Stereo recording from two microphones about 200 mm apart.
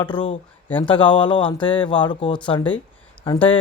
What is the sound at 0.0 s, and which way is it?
Speech, 25° left (ahead or behind).